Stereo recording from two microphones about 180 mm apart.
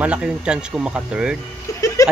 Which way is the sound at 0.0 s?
5° right (ahead or behind).